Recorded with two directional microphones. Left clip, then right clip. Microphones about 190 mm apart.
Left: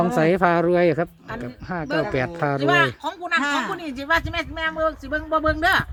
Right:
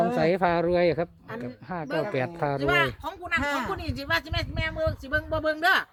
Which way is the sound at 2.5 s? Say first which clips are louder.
Left 6 dB; 30° right (ahead or behind).